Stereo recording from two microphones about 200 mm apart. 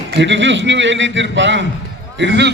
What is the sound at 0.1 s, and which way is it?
A man's voice, 65° right (ahead or behind).